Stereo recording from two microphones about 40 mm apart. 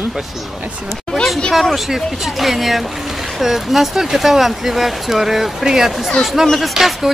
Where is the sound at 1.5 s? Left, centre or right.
Centre.